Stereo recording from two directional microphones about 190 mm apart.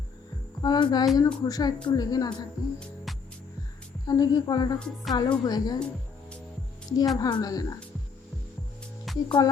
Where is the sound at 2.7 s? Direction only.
Centre (ahead or behind).